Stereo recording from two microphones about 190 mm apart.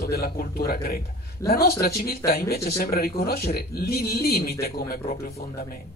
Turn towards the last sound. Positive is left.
turn(degrees=55)  # may be behind; listen again after turning